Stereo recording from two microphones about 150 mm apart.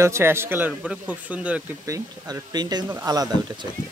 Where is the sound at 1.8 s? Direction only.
25° right (ahead or behind).